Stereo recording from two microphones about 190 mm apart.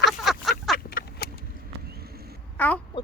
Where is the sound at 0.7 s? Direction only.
50° left (ahead or behind).